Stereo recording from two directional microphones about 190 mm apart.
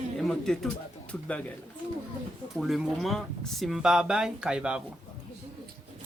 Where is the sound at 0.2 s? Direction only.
Centre (ahead or behind).